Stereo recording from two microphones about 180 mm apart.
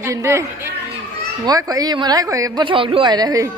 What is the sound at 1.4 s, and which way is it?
A woman's voice, 20° right (ahead or behind).